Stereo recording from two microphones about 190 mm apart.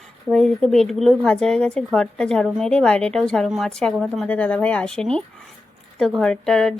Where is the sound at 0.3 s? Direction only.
5° left (ahead or behind).